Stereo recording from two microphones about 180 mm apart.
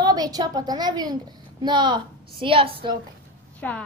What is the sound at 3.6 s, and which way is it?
Speech, 5° left (ahead or behind).